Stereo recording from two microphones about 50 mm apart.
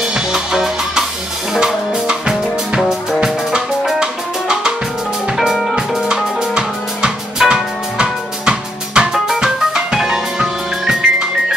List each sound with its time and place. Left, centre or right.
0.0 s music: centre
5.4 s music: centre
8.0 s music: centre